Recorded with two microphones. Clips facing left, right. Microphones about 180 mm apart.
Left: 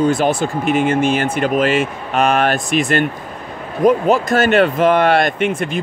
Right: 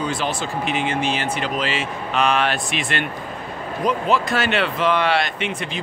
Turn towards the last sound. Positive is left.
turn(degrees=50)  # may be behind; listen again after turning